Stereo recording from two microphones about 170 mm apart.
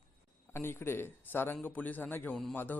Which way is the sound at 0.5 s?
15° left (ahead or behind).